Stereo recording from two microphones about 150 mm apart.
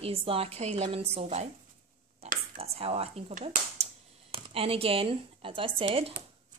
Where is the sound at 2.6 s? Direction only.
40° right (ahead or behind).